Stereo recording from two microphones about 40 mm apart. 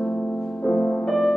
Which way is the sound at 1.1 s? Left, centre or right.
Centre.